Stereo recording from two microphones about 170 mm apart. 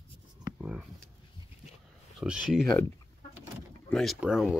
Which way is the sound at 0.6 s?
5° right (ahead or behind).